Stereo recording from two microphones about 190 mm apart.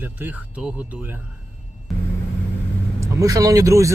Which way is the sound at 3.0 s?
15° right (ahead or behind).